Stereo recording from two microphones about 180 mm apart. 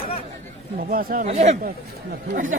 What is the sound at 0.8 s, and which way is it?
Speech, 55° right (ahead or behind).